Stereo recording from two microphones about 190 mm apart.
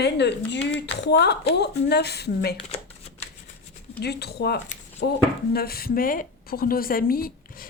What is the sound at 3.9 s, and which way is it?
A woman's voice, 60° left (ahead or behind).